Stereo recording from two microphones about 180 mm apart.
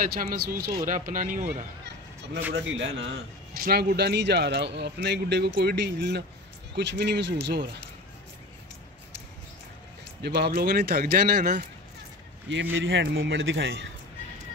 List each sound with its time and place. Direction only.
0.0 s speech: 55° right (ahead or behind)
2.5 s speech: 90° right
3.5 s speech: 55° right (ahead or behind)
10.2 s speech: 60° right (ahead or behind)
12.7 s speech: 90° right